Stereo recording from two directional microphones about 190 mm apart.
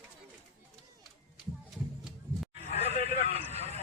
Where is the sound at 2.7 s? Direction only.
35° left (ahead or behind).